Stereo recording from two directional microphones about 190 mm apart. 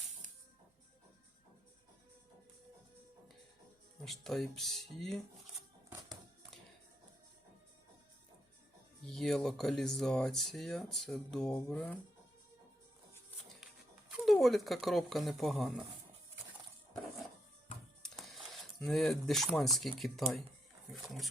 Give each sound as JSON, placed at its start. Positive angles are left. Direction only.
{"t": 4.0, "sound": "speech", "side_deg": 0}
{"t": 9.0, "sound": "speech", "side_deg": 0}
{"t": 14.3, "sound": "speech", "side_deg": 0}
{"t": 18.0, "sound": "speech", "side_deg": 0}